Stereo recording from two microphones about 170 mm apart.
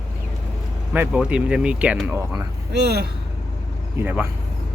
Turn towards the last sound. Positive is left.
turn(degrees=-10)  # may be behind; listen again after turning